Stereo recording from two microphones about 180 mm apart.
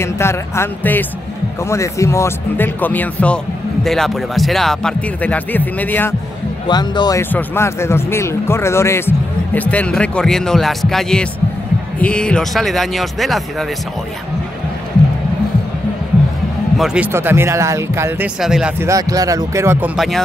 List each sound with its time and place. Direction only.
0.0 s speech: 15° left (ahead or behind)
6.7 s speech: 25° left (ahead or behind); by 13.7 s centre (ahead or behind)
16.7 s speech: 5° right (ahead or behind)
18.9 s speech: 20° right (ahead or behind)